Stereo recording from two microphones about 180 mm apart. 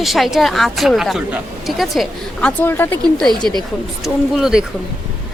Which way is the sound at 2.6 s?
10° left (ahead or behind).